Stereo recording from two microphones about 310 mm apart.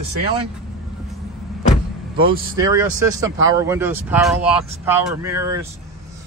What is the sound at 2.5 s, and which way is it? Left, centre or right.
Speech, centre.